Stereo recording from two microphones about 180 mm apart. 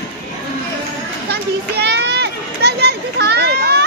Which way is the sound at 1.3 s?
65° right (ahead or behind).